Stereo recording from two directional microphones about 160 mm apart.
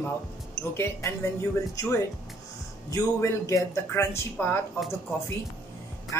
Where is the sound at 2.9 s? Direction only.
20° left (ahead or behind).